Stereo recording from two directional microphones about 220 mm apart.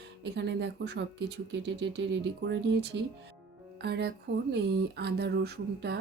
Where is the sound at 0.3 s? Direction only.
50° right (ahead or behind).